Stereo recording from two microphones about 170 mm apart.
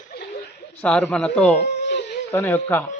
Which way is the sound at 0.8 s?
10° left (ahead or behind).